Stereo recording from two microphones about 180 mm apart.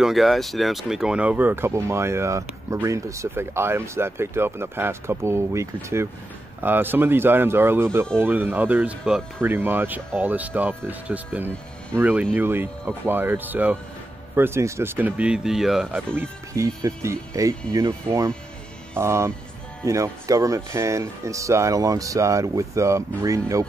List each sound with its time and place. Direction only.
0.0 s speech: centre (ahead or behind)
16.2 s speech: 20° right (ahead or behind)